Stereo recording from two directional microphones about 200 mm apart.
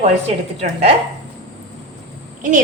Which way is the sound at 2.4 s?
40° right (ahead or behind).